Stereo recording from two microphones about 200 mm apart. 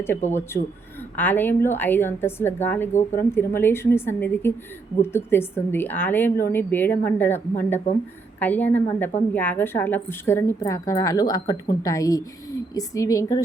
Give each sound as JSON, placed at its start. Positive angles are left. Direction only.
{"t": 0.0, "sound": "a woman's voice", "side_deg": 10}